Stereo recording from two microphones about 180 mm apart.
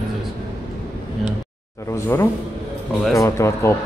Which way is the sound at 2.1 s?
15° left (ahead or behind).